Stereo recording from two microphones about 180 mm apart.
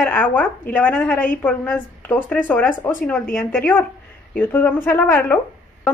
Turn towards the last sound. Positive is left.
turn(degrees=10)  # may be behind; listen again after turning